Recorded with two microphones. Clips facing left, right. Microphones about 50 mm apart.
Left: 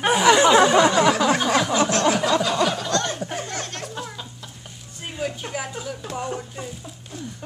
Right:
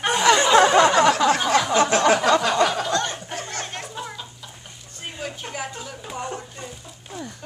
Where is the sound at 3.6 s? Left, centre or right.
Centre.